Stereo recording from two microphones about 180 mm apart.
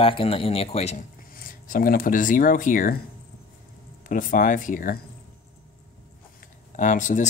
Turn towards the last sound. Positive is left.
turn(degrees=45)  # may be behind; listen again after turning